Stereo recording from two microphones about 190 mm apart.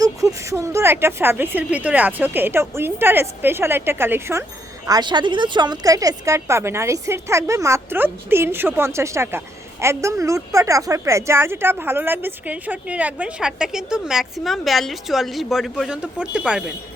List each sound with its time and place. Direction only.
0.0 s a woman's voice: 15° right (ahead or behind)
4.9 s a woman's voice: 25° right (ahead or behind); by 16.7 s 5° right (ahead or behind)